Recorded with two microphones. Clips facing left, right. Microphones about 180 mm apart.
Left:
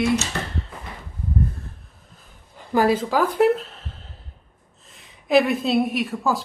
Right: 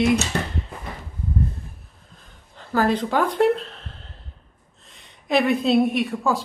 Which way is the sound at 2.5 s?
10° left (ahead or behind).